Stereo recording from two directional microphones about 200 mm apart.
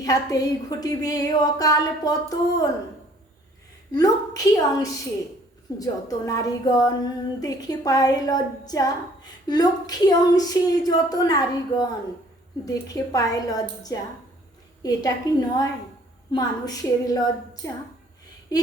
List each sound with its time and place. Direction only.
0.0 s a woman's voice: 15° left (ahead or behind)
3.9 s a woman's voice: 20° left (ahead or behind)